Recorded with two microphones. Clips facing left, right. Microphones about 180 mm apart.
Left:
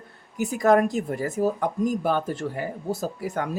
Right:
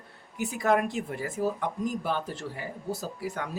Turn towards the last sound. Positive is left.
turn(degrees=50)  # may be behind; listen again after turning